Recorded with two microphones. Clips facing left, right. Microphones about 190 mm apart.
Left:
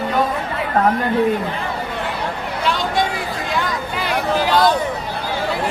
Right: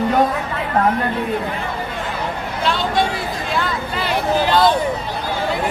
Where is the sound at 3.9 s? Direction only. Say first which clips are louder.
Right 1 dB; 10° left (ahead or behind).